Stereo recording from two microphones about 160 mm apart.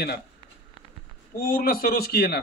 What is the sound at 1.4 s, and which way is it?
A man's voice, 65° left (ahead or behind).